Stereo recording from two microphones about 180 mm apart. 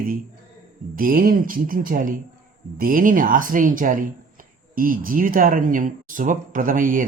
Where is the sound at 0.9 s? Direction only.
50° right (ahead or behind).